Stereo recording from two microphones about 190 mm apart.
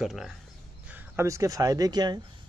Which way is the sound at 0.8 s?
10° right (ahead or behind).